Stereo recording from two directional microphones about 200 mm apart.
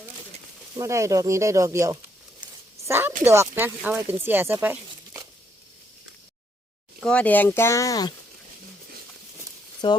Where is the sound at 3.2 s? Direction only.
15° right (ahead or behind).